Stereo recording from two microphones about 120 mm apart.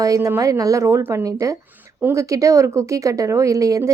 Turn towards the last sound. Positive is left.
turn(degrees=-25)  # may be behind; listen again after turning